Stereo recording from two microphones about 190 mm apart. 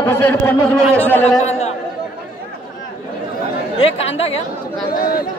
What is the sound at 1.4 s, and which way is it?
Speech, 35° left (ahead or behind).